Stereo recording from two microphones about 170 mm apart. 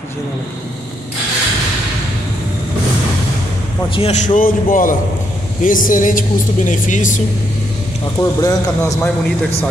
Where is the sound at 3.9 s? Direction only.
40° left (ahead or behind).